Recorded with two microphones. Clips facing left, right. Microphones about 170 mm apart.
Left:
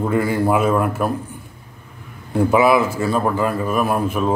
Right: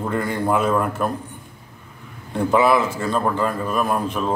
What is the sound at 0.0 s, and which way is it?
A man's voice, 5° left (ahead or behind).